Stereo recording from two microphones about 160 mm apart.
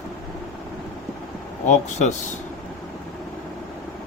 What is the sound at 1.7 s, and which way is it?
Speech, 45° left (ahead or behind).